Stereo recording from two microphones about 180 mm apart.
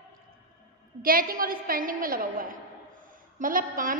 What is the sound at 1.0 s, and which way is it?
A woman's voice, 55° right (ahead or behind).